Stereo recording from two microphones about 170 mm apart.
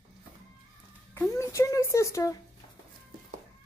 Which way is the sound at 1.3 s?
15° left (ahead or behind).